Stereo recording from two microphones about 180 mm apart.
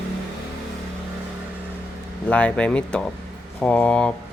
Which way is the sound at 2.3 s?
5° left (ahead or behind).